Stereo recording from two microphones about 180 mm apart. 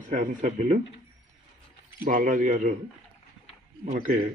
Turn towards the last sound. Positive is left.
turn(degrees=-40)  # may be behind; listen again after turning